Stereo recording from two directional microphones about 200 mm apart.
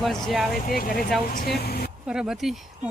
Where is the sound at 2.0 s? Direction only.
5° right (ahead or behind).